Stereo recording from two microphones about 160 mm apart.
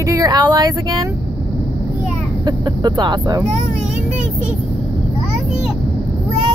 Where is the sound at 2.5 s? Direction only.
25° right (ahead or behind).